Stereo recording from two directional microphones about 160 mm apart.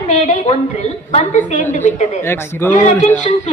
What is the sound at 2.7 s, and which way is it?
Speech, 45° left (ahead or behind).